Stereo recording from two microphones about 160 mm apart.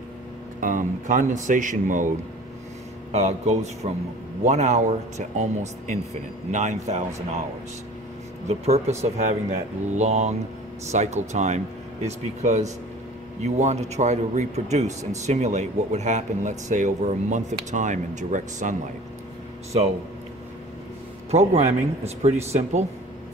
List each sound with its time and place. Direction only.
0.6 s speech: 55° right (ahead or behind)
8.5 s speech: 40° right (ahead or behind)
21.3 s speech: 40° right (ahead or behind)